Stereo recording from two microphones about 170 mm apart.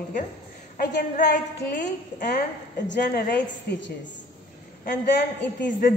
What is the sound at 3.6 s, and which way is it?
Speech, 90° left.